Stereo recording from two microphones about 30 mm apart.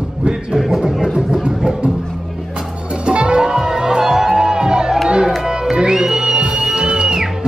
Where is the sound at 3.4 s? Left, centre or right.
Right.